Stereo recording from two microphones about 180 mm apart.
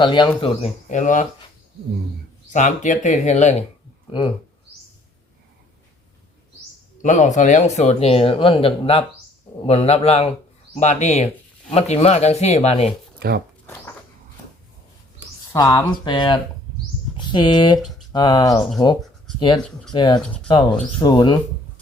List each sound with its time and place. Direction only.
0.0 s speech: 25° left (ahead or behind); by 1.3 s 45° left (ahead or behind)
2.5 s speech: 45° left (ahead or behind)
7.0 s speech: 45° left (ahead or behind)
13.1 s speech: 60° right (ahead or behind)
15.5 s speech: 20° left (ahead or behind)
19.5 s speech: 5° left (ahead or behind)
19.9 s speech: 25° left (ahead or behind)